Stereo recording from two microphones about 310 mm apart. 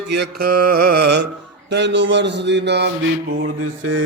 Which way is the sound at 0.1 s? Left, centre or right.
Right.